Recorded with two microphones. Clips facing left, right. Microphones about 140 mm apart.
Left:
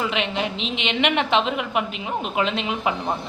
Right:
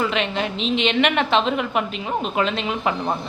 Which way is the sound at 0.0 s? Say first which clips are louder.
Right 2 dB; 15° left (ahead or behind).